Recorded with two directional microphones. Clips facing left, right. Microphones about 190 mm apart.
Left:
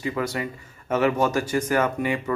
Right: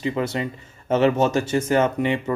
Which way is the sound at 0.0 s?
25° right (ahead or behind).